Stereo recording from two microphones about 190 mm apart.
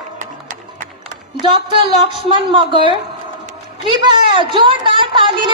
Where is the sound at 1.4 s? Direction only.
25° right (ahead or behind).